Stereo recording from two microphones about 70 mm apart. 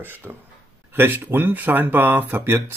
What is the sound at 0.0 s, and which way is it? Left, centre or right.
Speech, right.